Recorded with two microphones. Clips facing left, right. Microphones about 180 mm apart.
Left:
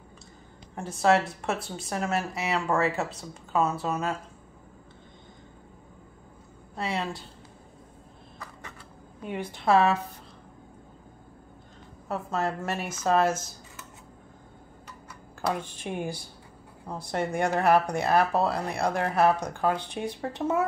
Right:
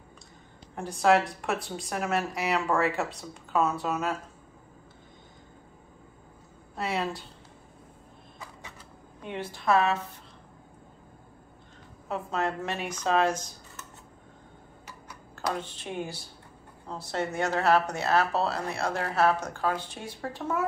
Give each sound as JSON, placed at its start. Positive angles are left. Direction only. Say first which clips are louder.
{"t": 0.7, "sound": "speech", "louder": "even", "side_deg": 0}
{"t": 6.8, "sound": "speech", "louder": "right 1 dB", "side_deg": 0}
{"t": 9.2, "sound": "a woman's voice", "louder": "left 2 dB", "side_deg": 5}
{"t": 9.5, "sound": "a woman's voice", "louder": "left 3 dB", "side_deg": 30}
{"t": 12.1, "sound": "speech", "louder": "left 1 dB", "side_deg": 0}
{"t": 14.9, "sound": "tick-tock", "louder": "right 1 dB", "side_deg": 0}
{"t": 15.8, "sound": "speech", "louder": "left 3 dB", "side_deg": 15}